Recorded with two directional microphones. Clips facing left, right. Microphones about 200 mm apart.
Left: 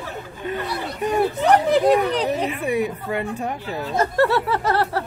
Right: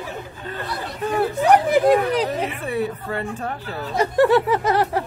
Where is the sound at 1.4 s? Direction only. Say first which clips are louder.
Right 2 dB; 10° right (ahead or behind).